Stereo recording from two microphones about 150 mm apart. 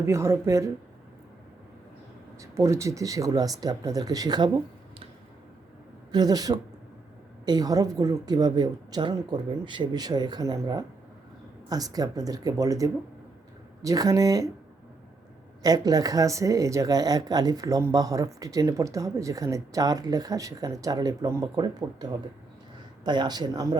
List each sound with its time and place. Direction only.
0.0 s speech: 20° right (ahead or behind)
2.4 s speech: 20° right (ahead or behind)
6.1 s speech: 25° right (ahead or behind)
15.6 s speech: 25° right (ahead or behind)